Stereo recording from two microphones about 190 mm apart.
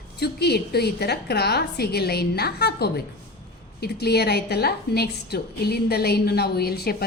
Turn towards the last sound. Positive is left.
turn(degrees=55)  # may be behind; listen again after turning